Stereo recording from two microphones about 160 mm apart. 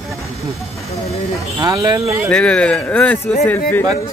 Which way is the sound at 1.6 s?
25° right (ahead or behind).